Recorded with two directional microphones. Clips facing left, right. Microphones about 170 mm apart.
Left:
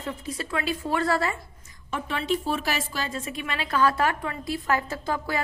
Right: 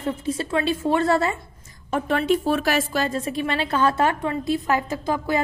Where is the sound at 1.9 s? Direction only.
45° right (ahead or behind).